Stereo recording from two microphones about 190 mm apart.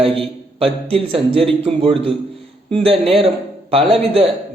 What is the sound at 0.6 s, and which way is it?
A man's voice, 30° right (ahead or behind).